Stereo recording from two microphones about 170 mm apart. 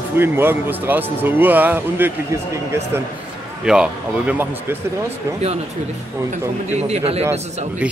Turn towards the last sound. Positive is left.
turn(degrees=-35)  # may be behind; listen again after turning